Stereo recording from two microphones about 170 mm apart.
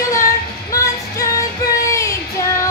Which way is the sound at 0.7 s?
20° left (ahead or behind).